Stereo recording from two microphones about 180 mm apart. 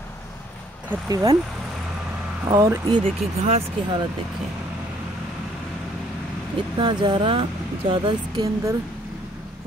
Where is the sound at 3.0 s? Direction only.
30° right (ahead or behind).